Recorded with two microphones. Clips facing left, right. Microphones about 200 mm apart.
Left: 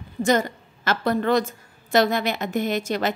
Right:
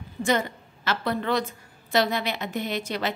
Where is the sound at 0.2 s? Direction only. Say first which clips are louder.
Left 4 dB; 40° left (ahead or behind).